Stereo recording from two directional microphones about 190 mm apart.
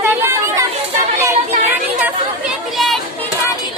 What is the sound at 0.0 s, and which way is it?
Chatter, 10° right (ahead or behind).